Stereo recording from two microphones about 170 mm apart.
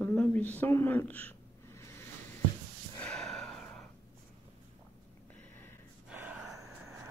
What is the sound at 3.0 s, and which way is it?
Gasp, 5° left (ahead or behind).